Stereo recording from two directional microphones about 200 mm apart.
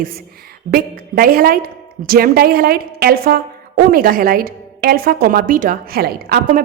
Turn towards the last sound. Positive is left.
turn(degrees=-50)  # may be behind; listen again after turning